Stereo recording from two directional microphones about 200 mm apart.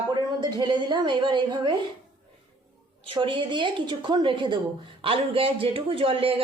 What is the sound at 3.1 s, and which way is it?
A woman's voice, 25° right (ahead or behind).